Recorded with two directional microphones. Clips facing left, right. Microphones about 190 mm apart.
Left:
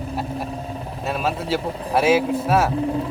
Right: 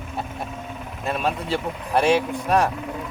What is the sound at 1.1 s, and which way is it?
Speech, centre (ahead or behind).